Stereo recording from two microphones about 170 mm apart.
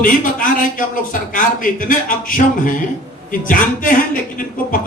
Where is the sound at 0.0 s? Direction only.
50° left (ahead or behind).